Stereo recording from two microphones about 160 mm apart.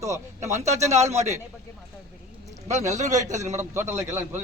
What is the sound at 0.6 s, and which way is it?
Speech, 45° right (ahead or behind).